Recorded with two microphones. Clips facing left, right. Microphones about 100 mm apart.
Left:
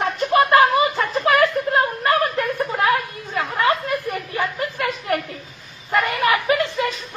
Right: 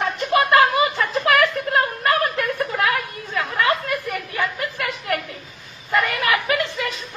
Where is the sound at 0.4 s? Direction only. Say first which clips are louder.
Left 2 dB; 25° left (ahead or behind).